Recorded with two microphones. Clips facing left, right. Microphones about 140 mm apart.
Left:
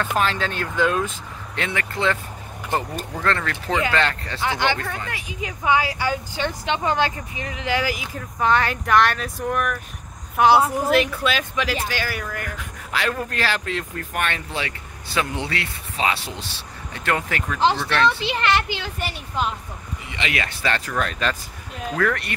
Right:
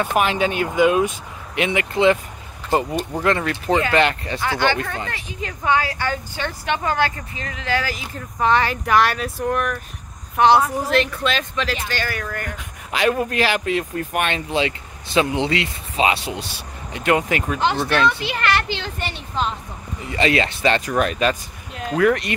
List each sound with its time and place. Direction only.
0.0 s speech: 15° right (ahead or behind)
3.2 s speech: 15° right (ahead or behind)
4.4 s a woman's voice: 15° left (ahead or behind)
8.4 s a woman's voice: centre (ahead or behind)
12.5 s speech: 20° right (ahead or behind)
18.0 s a woman's voice: 25° left (ahead or behind); by 19.5 s 10° left (ahead or behind)
20.1 s speech: 35° right (ahead or behind)
20.4 s speech: 20° right (ahead or behind)